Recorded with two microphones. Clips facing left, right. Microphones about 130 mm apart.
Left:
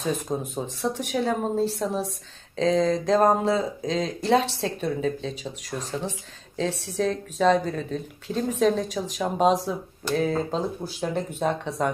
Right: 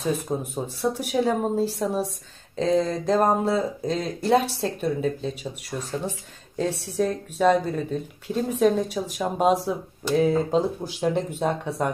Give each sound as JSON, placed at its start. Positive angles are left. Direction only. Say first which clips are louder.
{"t": 0.3, "sound": "speech", "louder": "right 1 dB", "side_deg": -10}